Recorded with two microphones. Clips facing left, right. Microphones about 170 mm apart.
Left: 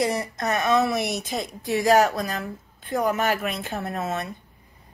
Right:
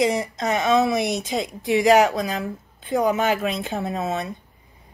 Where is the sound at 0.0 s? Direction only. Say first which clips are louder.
Right 3 dB; 20° right (ahead or behind).